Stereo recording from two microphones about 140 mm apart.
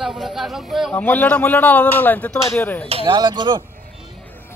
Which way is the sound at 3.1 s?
30° right (ahead or behind).